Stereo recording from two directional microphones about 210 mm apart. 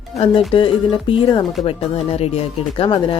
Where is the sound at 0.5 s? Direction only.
25° left (ahead or behind).